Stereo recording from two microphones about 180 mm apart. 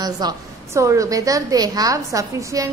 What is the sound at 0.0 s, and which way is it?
A woman's voice, 20° right (ahead or behind).